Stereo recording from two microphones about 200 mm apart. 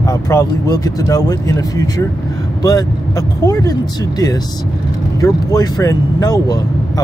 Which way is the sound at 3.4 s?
15° left (ahead or behind).